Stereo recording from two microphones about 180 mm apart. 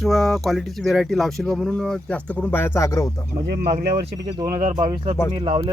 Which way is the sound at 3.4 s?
60° right (ahead or behind).